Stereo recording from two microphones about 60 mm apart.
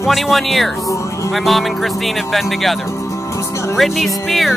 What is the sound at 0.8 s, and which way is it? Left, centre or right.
Speech, left.